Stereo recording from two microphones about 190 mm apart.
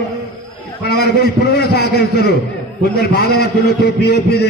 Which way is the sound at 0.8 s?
60° left (ahead or behind).